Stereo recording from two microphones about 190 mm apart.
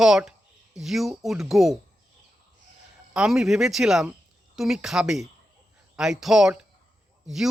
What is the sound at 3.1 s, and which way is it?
Speech, 5° right (ahead or behind).